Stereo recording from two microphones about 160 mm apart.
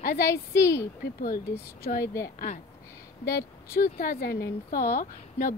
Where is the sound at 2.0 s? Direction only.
20° left (ahead or behind).